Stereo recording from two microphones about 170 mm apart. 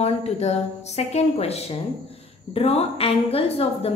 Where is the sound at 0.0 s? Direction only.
40° left (ahead or behind).